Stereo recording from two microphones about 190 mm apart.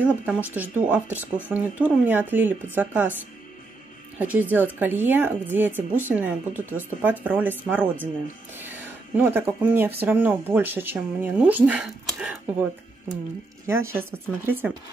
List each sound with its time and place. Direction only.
0.0 s speech: 10° right (ahead or behind)
4.2 s speech: 10° right (ahead or behind)
13.9 s speech: 10° right (ahead or behind)